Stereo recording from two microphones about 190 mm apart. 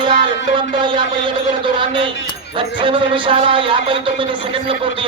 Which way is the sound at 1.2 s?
25° right (ahead or behind).